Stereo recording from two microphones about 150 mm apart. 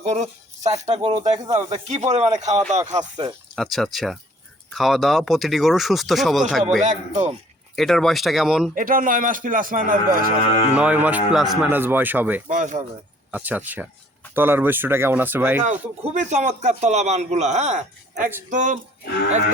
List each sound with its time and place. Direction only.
0.0 s a man's voice: 50° right (ahead or behind); by 1.3 s 30° right (ahead or behind)
1.5 s a man's voice: 50° right (ahead or behind)
3.5 s speech: centre (ahead or behind)
6.8 s a man's voice: 55° right (ahead or behind)
7.8 s speech: centre (ahead or behind)
8.7 s speech: 70° right (ahead or behind)
10.8 s speech: 10° right (ahead or behind)
11.7 s speech: 15° right (ahead or behind)
12.5 s speech: 60° right (ahead or behind)
13.3 s speech: 10° right (ahead or behind)
15.6 s a man's voice: 50° right (ahead or behind)